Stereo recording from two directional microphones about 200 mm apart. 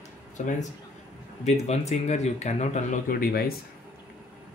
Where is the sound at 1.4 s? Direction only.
35° left (ahead or behind).